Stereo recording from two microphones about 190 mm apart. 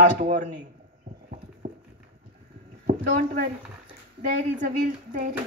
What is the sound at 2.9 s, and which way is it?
Speech, 50° right (ahead or behind).